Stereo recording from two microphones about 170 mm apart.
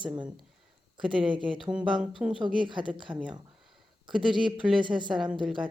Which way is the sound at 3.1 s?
5° right (ahead or behind).